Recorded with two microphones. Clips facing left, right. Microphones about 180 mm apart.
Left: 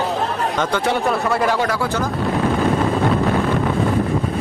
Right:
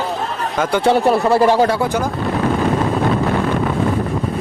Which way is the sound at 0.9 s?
30° right (ahead or behind).